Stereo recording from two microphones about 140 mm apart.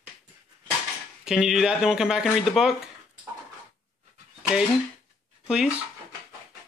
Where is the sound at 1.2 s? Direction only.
5° right (ahead or behind).